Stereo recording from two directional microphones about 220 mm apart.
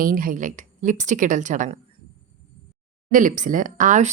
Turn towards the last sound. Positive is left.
turn(degrees=-35)  # may be behind; listen again after turning